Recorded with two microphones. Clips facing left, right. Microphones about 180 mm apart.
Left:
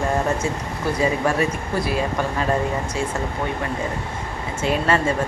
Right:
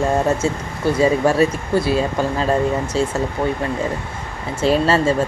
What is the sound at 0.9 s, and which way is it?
Speech, 30° right (ahead or behind).